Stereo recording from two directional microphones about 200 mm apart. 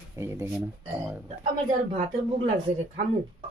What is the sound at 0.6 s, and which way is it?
Speech, 5° right (ahead or behind).